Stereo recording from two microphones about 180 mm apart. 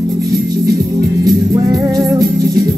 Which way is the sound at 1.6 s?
20° right (ahead or behind).